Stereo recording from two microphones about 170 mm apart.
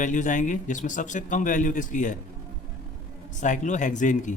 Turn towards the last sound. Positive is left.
turn(degrees=45)  # may be behind; listen again after turning